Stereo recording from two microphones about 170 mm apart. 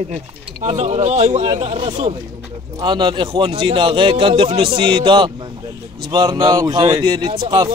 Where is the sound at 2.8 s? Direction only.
25° right (ahead or behind).